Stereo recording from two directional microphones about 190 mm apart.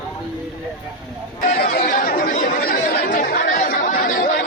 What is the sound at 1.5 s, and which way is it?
Speech, 45° left (ahead or behind).